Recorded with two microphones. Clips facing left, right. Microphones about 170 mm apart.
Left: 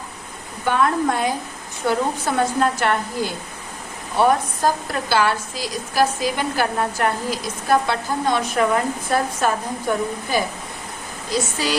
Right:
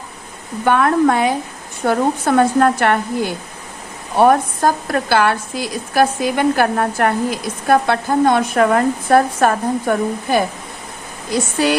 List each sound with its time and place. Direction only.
0.6 s a woman's voice: 60° right (ahead or behind)
11.6 s a woman's voice: 55° right (ahead or behind)